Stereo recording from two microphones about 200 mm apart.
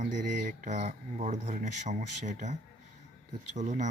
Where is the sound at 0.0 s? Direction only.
40° right (ahead or behind).